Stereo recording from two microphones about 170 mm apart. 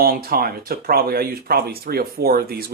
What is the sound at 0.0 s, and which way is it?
Speech, 60° right (ahead or behind).